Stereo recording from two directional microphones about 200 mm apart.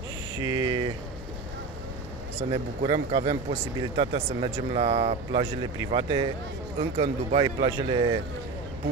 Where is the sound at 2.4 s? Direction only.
30° right (ahead or behind).